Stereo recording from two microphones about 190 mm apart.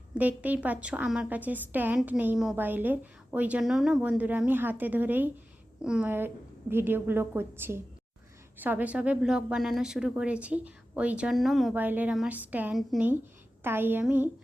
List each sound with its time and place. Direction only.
0.1 s a woman's voice: 10° right (ahead or behind)